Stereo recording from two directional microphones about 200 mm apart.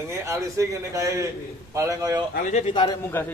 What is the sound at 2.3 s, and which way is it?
Speech, 40° left (ahead or behind).